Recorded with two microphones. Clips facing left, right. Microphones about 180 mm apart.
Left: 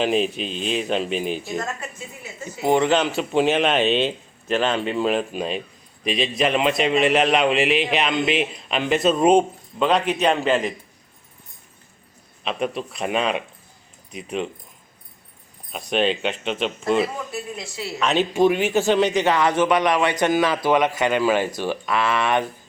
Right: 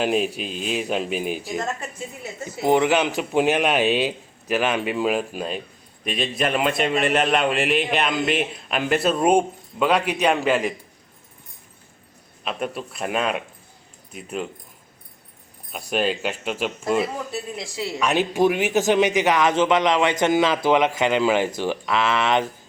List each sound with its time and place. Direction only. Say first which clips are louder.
0.0 s speech: left 1 dB; 5° right (ahead or behind)
2.7 s a man's voice: left 1 dB; 15° right (ahead or behind)
12.5 s a man's voice: left 3 dB; centre (ahead or behind)
15.7 s a man's voice: left 2 dB; 5° right (ahead or behind)